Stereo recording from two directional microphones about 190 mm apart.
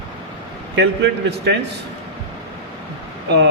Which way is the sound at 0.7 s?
65° right (ahead or behind).